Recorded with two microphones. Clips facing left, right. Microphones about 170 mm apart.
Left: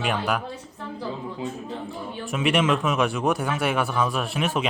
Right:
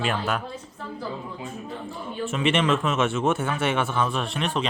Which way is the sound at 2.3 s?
5° left (ahead or behind).